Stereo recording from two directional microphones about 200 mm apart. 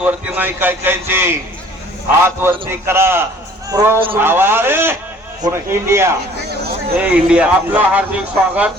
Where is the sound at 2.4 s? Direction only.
10° right (ahead or behind).